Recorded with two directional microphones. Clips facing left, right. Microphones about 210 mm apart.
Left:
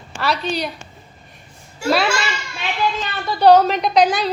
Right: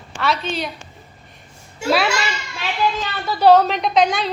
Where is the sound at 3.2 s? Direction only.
5° right (ahead or behind).